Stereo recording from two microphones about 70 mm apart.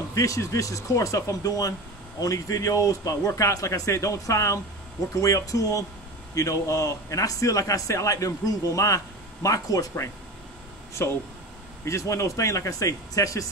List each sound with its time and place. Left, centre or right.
0.1 s a man's voice: left
11.0 s a man's voice: left